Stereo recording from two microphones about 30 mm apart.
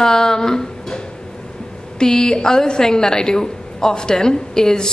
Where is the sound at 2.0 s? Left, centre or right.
Left.